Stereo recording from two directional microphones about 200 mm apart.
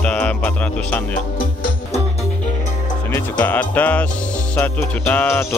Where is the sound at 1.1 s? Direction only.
45° left (ahead or behind).